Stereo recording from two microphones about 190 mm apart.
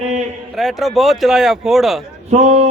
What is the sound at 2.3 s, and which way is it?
Speech, 35° right (ahead or behind).